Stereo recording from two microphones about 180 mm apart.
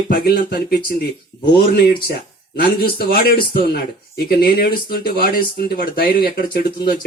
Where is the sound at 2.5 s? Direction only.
55° left (ahead or behind).